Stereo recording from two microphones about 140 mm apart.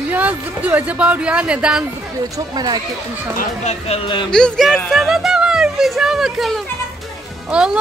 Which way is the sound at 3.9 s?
35° left (ahead or behind).